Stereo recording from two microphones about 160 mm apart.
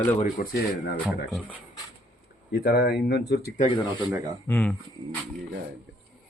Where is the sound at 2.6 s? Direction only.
70° left (ahead or behind); by 3.5 s 85° left.